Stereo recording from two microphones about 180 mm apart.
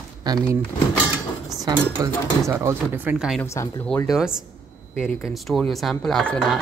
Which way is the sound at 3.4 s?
15° left (ahead or behind).